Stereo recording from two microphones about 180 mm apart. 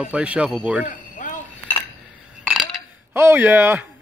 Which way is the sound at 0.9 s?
45° left (ahead or behind).